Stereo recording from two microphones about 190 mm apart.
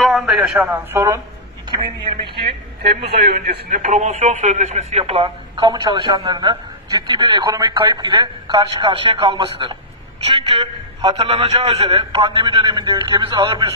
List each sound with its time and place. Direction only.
0.0 s a sound: centre (ahead or behind)
0.7 s a man's voice: 10° right (ahead or behind)
2.9 s a man's voice: 30° right (ahead or behind)
3.3 s speech: 55° right (ahead or behind)
3.8 s speech: 40° right (ahead or behind); by 13.7 s 25° right (ahead or behind)